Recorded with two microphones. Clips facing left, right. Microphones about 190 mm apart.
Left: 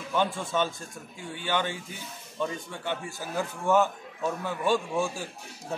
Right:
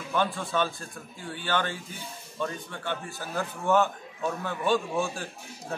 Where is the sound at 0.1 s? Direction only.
15° left (ahead or behind).